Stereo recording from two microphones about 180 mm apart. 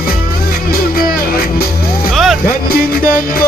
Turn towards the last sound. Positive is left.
turn(degrees=55)  # may be behind; listen again after turning